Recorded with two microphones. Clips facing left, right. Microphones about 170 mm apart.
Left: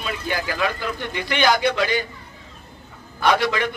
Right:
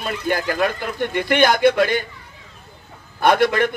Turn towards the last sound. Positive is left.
turn(degrees=-50)  # may be behind; listen again after turning